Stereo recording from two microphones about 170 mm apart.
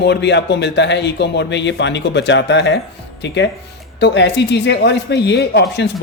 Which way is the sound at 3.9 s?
85° left.